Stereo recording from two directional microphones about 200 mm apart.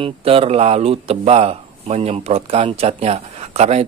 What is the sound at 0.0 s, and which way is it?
Speech, 30° right (ahead or behind).